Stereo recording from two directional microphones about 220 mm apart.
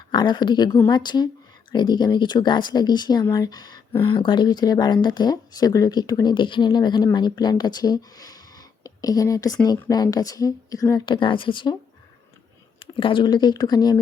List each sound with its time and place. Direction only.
0.1 s speech: 20° left (ahead or behind)
12.8 s speech: 25° left (ahead or behind)